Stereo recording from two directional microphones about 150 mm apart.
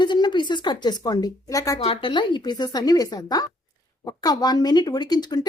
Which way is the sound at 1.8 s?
35° left (ahead or behind).